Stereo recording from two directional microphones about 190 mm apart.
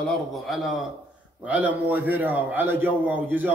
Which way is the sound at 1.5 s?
10° right (ahead or behind).